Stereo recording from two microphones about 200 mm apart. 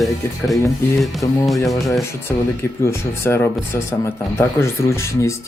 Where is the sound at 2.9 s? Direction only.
10° left (ahead or behind).